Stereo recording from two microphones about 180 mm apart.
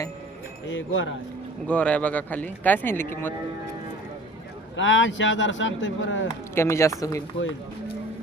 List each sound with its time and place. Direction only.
0.7 s speech: 90° left
1.6 s speech: 5° left (ahead or behind)
4.8 s speech: 90° left
6.5 s speech: 15° left (ahead or behind)